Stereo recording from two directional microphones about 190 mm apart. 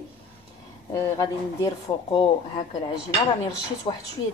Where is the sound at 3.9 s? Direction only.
30° left (ahead or behind).